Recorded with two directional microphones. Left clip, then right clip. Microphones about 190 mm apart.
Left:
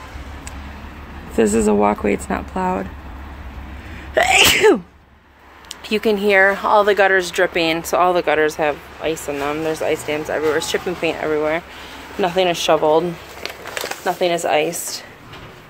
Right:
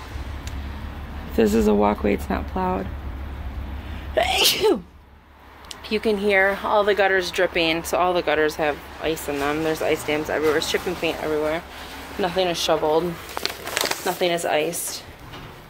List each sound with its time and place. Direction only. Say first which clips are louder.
1.3 s speech: left 3 dB; 10° left (ahead or behind)
4.1 s speech: left 6 dB; 35° left (ahead or behind)
5.7 s speech: left 4 dB; 35° left (ahead or behind); by 10.7 s 5° left (ahead or behind)
10.7 s speech: left 3 dB; 15° left (ahead or behind); by 13.0 s 30° left (ahead or behind)
14.0 s speech: left 8 dB; 15° left (ahead or behind)